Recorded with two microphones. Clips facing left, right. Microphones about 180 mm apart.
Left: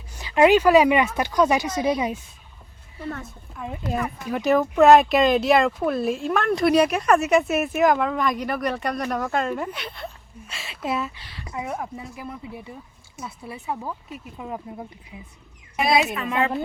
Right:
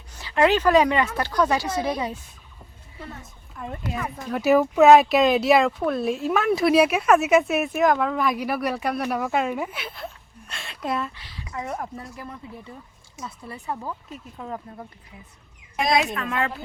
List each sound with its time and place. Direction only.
0.2 s speech: 15° left (ahead or behind)
3.5 s speech: centre (ahead or behind)
15.7 s speech: 5° left (ahead or behind)